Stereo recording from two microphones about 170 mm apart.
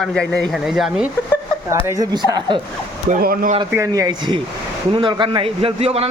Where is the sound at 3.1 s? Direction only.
55° right (ahead or behind).